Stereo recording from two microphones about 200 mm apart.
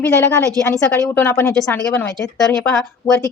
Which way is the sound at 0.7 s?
10° left (ahead or behind).